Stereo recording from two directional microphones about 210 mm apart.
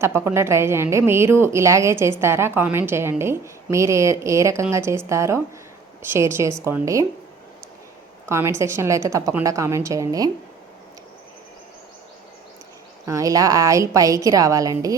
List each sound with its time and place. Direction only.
0.3 s a woman's voice: 10° right (ahead or behind)
8.3 s a woman's voice: 10° right (ahead or behind)
13.1 s a woman's voice: 15° right (ahead or behind)